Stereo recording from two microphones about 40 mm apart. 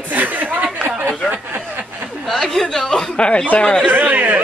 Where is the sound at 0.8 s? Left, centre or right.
Right.